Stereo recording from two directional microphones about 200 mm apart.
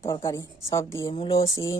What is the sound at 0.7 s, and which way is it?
Speech, 15° left (ahead or behind).